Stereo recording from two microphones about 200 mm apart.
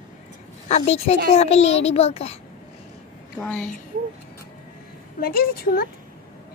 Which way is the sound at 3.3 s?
5° left (ahead or behind).